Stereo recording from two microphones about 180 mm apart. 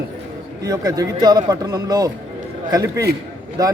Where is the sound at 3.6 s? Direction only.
20° right (ahead or behind).